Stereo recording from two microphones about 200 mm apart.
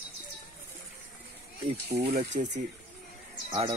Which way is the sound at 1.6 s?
30° right (ahead or behind).